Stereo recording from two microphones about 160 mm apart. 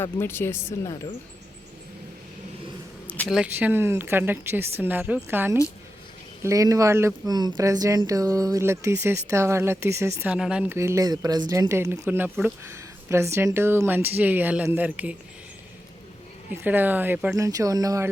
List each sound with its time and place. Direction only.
0.0 s speech: 15° left (ahead or behind)
3.2 s speech: 5° right (ahead or behind)
10.3 s speech: 5° right (ahead or behind)
16.5 s speech: 10° right (ahead or behind)